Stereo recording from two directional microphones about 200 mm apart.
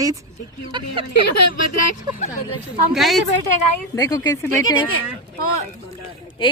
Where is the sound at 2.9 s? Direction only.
Centre (ahead or behind).